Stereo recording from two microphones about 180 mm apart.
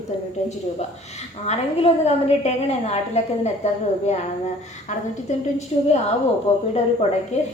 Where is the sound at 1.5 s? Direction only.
35° left (ahead or behind).